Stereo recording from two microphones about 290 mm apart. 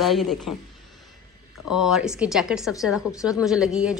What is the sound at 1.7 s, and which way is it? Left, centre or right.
A woman's voice, centre.